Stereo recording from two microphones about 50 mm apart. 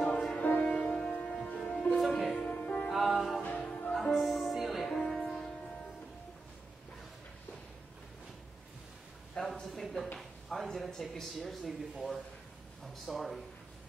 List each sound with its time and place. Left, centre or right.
0.1 s music: centre
0.4 s music: left
0.7 s music: centre
2.3 s music: left
2.9 s music: centre
3.5 s music: centre
3.9 s music: centre
9.4 s a sound: centre
9.7 s speech: centre